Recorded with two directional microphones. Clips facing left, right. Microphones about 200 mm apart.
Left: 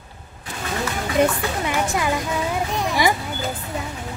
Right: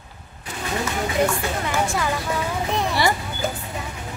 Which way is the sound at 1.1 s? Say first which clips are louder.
Left 4 dB; 20° left (ahead or behind).